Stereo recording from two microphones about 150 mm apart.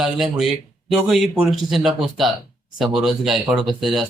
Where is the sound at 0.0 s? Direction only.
Centre (ahead or behind).